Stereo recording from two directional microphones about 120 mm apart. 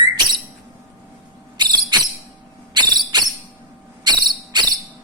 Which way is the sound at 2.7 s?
35° right (ahead or behind).